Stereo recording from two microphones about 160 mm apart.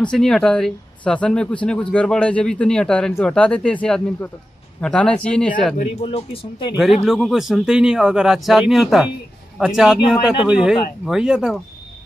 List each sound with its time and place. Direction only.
0.0 s speech: 5° left (ahead or behind)
5.8 s speech: 40° left (ahead or behind)
6.7 s speech: centre (ahead or behind)